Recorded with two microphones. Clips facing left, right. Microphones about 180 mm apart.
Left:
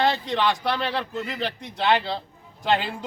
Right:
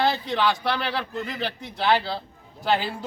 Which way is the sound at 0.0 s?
5° right (ahead or behind).